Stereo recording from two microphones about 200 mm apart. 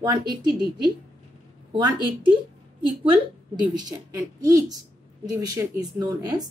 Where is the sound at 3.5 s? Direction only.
20° right (ahead or behind).